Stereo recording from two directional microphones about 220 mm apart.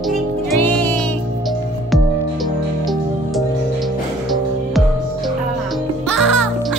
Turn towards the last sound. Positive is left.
turn(degrees=0)  # may be behind; listen again after turning